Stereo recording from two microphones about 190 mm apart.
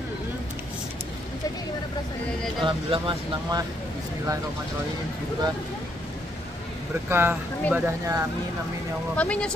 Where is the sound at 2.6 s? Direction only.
25° right (ahead or behind).